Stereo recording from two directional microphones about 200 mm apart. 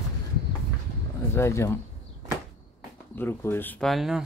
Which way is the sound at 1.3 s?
15° left (ahead or behind).